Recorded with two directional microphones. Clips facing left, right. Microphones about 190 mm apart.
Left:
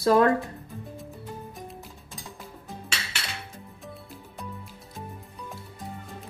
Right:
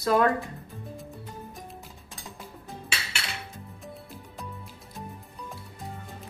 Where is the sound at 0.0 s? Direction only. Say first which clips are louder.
Left 3 dB; 35° left (ahead or behind).